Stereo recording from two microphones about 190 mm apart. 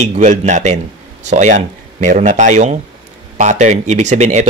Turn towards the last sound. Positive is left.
turn(degrees=-40)  # may be behind; listen again after turning